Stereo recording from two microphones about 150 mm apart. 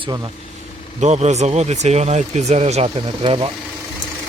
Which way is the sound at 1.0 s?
50° right (ahead or behind).